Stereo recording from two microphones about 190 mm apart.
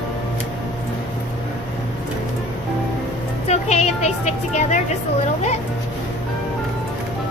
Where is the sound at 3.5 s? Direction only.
35° left (ahead or behind).